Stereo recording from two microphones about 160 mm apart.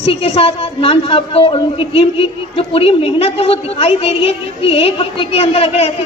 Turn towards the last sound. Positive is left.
turn(degrees=40)  # may be behind; listen again after turning